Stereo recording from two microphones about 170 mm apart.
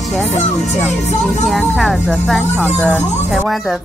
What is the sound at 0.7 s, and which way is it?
Speech, 5° left (ahead or behind).